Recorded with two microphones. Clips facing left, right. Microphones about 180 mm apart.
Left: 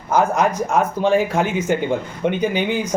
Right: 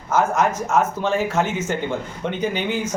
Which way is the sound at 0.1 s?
15° left (ahead or behind).